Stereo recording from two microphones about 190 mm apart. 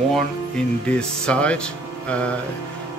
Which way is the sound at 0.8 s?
5° left (ahead or behind).